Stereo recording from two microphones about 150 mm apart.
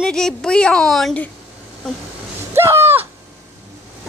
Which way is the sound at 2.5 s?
15° right (ahead or behind).